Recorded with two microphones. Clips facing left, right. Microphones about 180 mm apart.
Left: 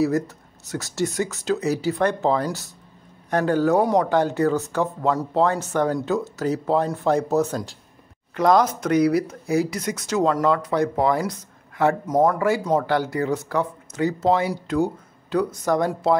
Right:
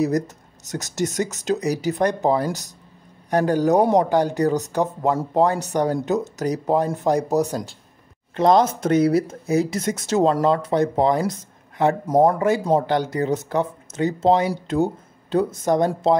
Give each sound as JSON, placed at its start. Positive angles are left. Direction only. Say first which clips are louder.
{"t": 0.7, "sound": "speech", "louder": "even", "side_deg": -20}
{"t": 8.4, "sound": "speech", "louder": "right 1 dB", "side_deg": -25}